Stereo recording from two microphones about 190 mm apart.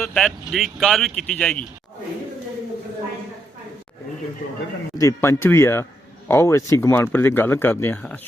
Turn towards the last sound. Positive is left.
turn(degrees=10)  # may be behind; listen again after turning